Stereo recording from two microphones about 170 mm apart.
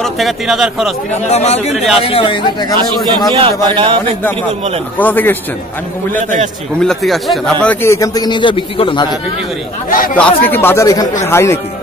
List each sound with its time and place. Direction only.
0.0 s speech: centre (ahead or behind)
1.2 s a man's voice: 40° left (ahead or behind)
3.3 s a man's voice: 30° right (ahead or behind)
4.9 s speech: 10° left (ahead or behind)
6.8 s speech: centre (ahead or behind)
7.6 s a man's voice: 15° left (ahead or behind)
9.8 s speech: 55° left (ahead or behind)
10.1 s speech: 10° left (ahead or behind)